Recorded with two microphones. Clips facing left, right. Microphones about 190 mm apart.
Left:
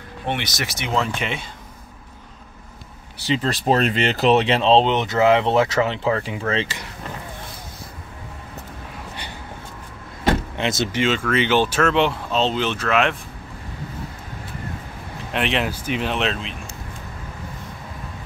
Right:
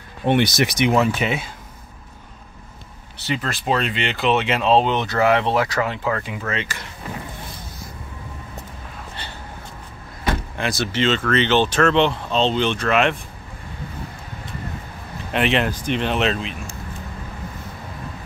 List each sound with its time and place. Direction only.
0.7 s speech: 15° right (ahead or behind)
3.4 s speech: 40° left (ahead or behind)
10.2 s speech: 20° left (ahead or behind); by 13.2 s centre (ahead or behind)
15.3 s speech: centre (ahead or behind)